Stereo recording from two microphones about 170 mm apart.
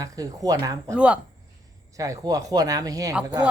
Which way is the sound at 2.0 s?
20° right (ahead or behind).